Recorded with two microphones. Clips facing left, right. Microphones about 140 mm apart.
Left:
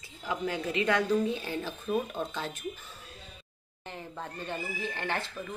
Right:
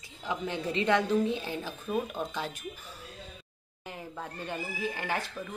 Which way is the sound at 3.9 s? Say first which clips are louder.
Even; 10° right (ahead or behind).